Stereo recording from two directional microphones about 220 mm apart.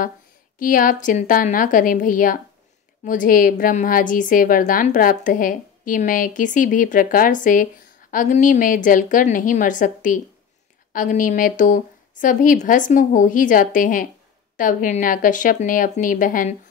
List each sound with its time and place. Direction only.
0.6 s a woman's voice: 35° left (ahead or behind)